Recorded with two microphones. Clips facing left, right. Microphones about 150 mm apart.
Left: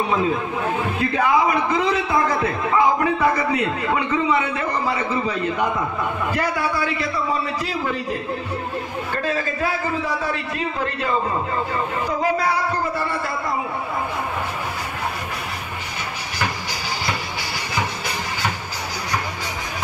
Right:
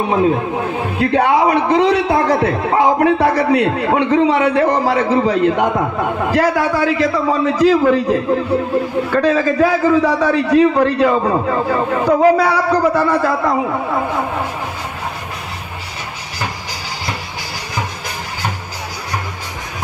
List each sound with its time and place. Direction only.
0.1 s a man's voice: 60° right (ahead or behind); by 14.2 s 75° right (ahead or behind)